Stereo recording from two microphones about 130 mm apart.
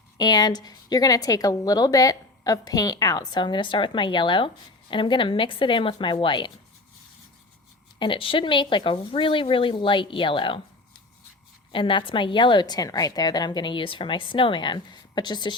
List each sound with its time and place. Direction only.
0.2 s a woman's voice: 30° left (ahead or behind)
7.9 s a woman's voice: 40° left (ahead or behind)
11.7 s a woman's voice: 40° left (ahead or behind)